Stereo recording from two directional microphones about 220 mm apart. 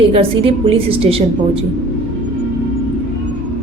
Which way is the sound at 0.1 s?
25° right (ahead or behind).